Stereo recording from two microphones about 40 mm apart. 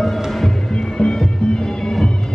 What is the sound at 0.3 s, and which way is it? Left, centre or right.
Music, centre.